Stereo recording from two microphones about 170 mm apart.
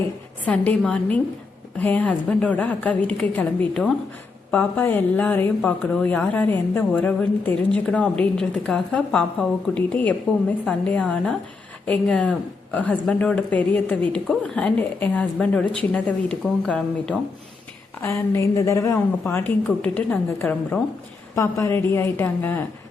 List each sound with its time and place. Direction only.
0.4 s speech: 10° left (ahead or behind)
18.0 s speech: 15° left (ahead or behind)